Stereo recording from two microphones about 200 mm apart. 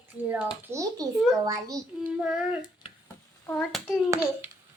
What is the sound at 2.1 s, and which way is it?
Speech, 5° right (ahead or behind).